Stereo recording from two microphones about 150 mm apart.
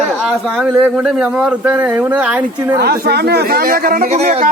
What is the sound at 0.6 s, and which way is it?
Speech, 5° right (ahead or behind).